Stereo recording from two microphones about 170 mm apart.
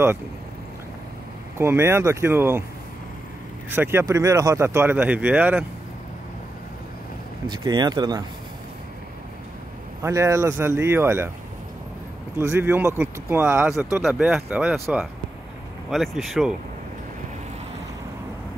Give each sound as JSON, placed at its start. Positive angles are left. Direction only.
{"t": 1.6, "sound": "speech", "side_deg": -15}
{"t": 3.7, "sound": "speech", "side_deg": -15}
{"t": 7.4, "sound": "speech", "side_deg": -25}
{"t": 10.0, "sound": "speech", "side_deg": -15}
{"t": 12.4, "sound": "speech", "side_deg": -15}